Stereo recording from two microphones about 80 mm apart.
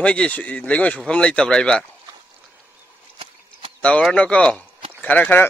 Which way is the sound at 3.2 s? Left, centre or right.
Right.